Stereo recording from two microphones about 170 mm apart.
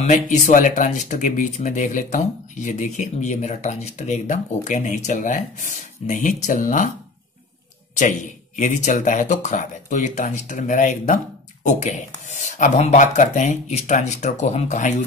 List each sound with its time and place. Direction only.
0.0 s speech: 45° left (ahead or behind)
7.9 s speech: 45° left (ahead or behind)